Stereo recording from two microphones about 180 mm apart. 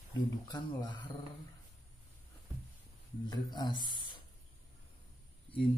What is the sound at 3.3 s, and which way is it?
Speech, 25° left (ahead or behind).